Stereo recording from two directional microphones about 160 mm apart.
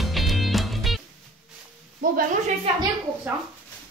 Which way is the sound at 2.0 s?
65° right (ahead or behind).